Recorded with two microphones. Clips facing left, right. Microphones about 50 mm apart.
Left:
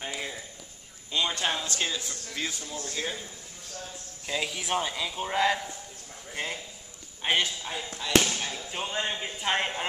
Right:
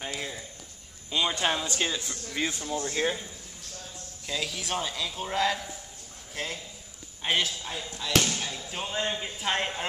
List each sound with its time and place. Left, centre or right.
0.0 s clip-clop: centre
1.1 s speech: centre; by 3.2 s right
4.3 s speech: centre